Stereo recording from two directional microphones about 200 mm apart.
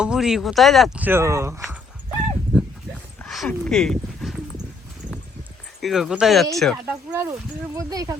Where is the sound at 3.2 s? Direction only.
Centre (ahead or behind).